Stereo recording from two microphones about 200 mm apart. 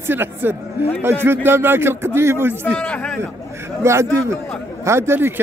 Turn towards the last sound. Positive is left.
turn(degrees=-10)  # may be behind; listen again after turning